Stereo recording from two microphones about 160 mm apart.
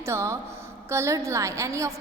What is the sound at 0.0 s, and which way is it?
A woman's voice, 20° right (ahead or behind).